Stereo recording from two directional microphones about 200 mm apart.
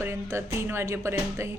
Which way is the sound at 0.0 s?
15° right (ahead or behind).